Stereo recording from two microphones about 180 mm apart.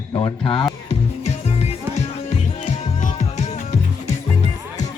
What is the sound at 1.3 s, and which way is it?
Music, 35° left (ahead or behind).